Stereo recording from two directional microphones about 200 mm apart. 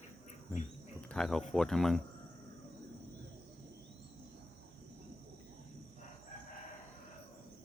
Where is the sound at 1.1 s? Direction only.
5° left (ahead or behind).